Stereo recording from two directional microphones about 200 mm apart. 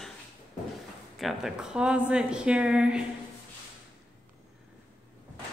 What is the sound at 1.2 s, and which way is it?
A woman's voice, centre (ahead or behind).